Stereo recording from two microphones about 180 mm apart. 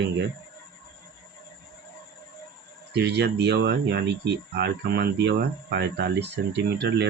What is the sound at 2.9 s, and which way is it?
Speech, 65° right (ahead or behind).